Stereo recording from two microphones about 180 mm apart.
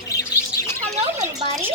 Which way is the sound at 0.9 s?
40° right (ahead or behind).